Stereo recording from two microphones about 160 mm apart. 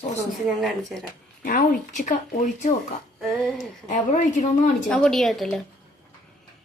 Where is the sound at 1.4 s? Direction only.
60° left (ahead or behind).